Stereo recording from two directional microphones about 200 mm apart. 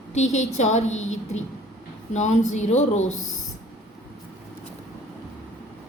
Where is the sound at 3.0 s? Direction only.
85° left.